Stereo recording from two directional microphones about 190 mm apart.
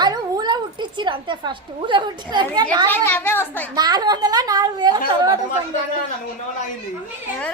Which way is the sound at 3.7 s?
20° right (ahead or behind).